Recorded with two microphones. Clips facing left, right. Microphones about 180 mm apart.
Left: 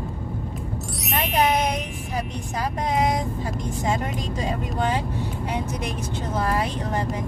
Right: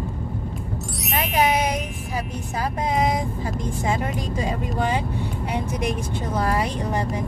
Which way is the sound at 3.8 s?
10° right (ahead or behind).